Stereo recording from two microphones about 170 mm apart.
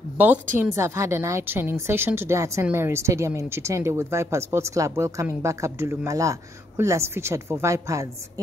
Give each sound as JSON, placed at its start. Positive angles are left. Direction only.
{"t": 0.6, "sound": "a woman's voice", "side_deg": -15}